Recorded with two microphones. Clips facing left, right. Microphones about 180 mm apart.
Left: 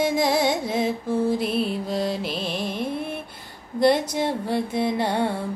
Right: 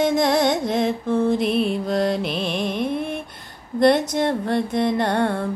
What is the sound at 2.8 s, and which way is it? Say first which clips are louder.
Music: right 4 dB; 10° left (ahead or behind).